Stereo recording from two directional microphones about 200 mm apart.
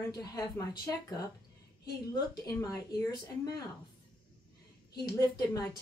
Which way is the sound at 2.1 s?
20° left (ahead or behind).